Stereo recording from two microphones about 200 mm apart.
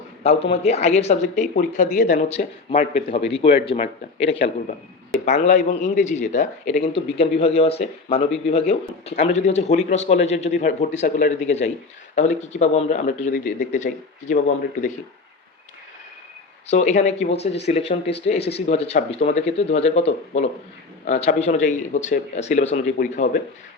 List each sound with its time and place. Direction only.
0.2 s speech: 30° left (ahead or behind)
16.6 s speech: 35° left (ahead or behind)